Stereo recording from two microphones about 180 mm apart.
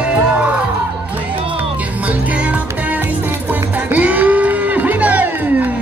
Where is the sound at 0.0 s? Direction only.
5° right (ahead or behind).